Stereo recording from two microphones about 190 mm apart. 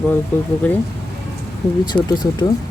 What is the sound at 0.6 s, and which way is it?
Speech, 10° left (ahead or behind).